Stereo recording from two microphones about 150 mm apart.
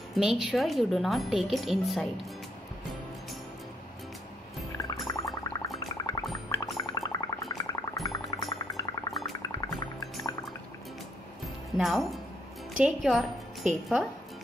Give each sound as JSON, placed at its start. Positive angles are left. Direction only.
{"t": 0.1, "sound": "a woman's voice", "side_deg": 0}
{"t": 4.7, "sound": "music", "side_deg": 20}
{"t": 6.3, "sound": "gargling", "side_deg": 25}
{"t": 6.8, "sound": "a sound", "side_deg": 25}
{"t": 8.1, "sound": "music", "side_deg": 25}
{"t": 9.4, "sound": "gargling", "side_deg": 25}
{"t": 11.7, "sound": "a woman's voice", "side_deg": 0}